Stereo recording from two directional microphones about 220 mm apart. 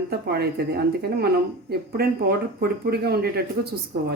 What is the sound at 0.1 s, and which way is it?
Speech, 45° right (ahead or behind).